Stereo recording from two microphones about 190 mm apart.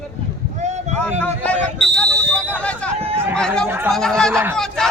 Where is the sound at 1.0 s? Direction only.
5° left (ahead or behind).